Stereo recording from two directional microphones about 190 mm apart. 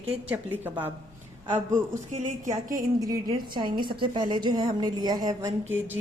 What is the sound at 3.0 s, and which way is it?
A woman's voice, 20° right (ahead or behind).